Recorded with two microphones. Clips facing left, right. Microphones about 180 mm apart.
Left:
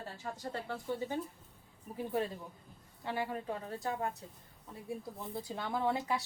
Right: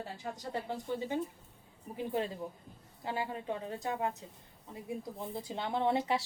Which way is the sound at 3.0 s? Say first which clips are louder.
Even; 25° right (ahead or behind).